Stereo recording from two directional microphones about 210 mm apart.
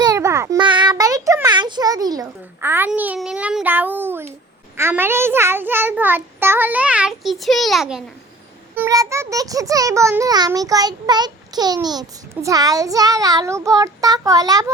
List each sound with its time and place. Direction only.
0.0 s a child's voice: 15° right (ahead or behind)
8.7 s a child's voice: 15° right (ahead or behind)